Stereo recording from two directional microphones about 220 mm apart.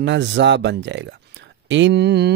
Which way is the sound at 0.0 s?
55° right (ahead or behind).